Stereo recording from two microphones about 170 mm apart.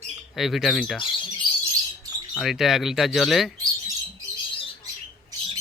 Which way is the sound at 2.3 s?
Centre (ahead or behind).